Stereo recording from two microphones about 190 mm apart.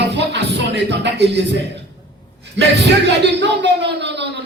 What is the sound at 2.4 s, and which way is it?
Speech, 65° right (ahead or behind).